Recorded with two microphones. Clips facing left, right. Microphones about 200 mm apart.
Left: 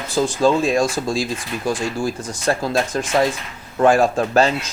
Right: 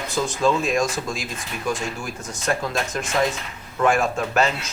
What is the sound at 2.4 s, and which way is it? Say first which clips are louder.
Speech: left 5 dB; 35° left (ahead or behind).